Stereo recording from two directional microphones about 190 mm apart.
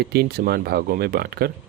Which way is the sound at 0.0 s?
55° right (ahead or behind).